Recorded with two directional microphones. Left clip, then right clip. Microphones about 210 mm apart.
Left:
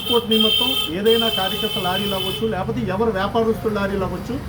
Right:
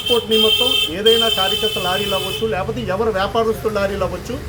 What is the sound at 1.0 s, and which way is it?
Speech, 10° right (ahead or behind).